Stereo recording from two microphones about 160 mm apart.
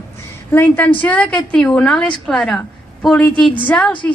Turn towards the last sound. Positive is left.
turn(degrees=10)  # may be behind; listen again after turning